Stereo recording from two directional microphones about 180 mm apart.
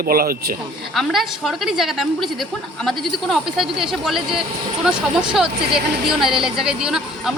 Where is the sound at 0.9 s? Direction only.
Centre (ahead or behind).